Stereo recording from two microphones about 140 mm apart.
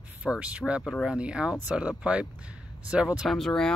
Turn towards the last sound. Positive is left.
turn(degrees=0)  # may be behind; listen again after turning